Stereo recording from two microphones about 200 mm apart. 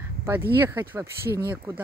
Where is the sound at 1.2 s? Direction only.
50° right (ahead or behind).